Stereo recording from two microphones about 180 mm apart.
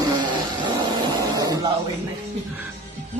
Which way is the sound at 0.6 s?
25° right (ahead or behind).